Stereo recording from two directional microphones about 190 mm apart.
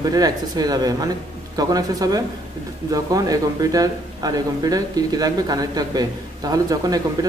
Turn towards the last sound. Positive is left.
turn(degrees=-20)  # may be behind; listen again after turning